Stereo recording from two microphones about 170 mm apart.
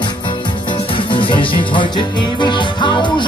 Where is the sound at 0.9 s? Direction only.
30° left (ahead or behind).